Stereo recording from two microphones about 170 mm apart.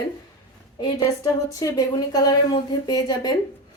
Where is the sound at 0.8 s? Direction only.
30° left (ahead or behind).